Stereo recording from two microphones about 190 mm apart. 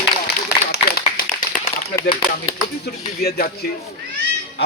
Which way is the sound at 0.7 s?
50° left (ahead or behind).